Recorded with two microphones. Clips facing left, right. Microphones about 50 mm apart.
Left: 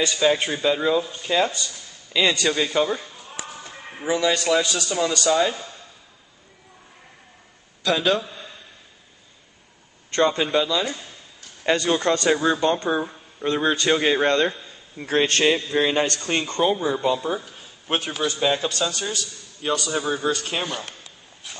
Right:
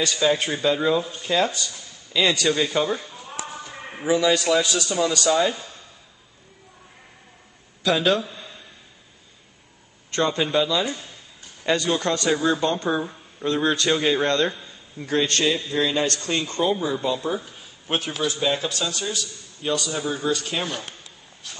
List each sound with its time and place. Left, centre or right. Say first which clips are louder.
0.0 s speech: left 1 dB; centre
4.1 s speech: right 1 dB; centre
7.8 s speech: right 1 dB; centre
10.1 s speech: left 2 dB; centre
11.7 s a man's voice: left 2 dB; centre
12.7 s a man's voice: left 1 dB; centre
15.4 s a man's voice: left 3 dB; left
16.9 s a man's voice: left 2 dB; centre
17.6 s a sound: left 1 dB; centre
18.4 s speech: left 4 dB; centre
19.9 s a man's voice: left 2 dB; centre
20.4 s a man's voice: even; centre